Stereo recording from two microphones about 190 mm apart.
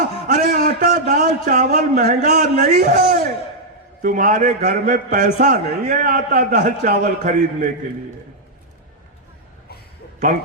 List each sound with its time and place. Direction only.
0.0 s a man's voice: 45° right (ahead or behind)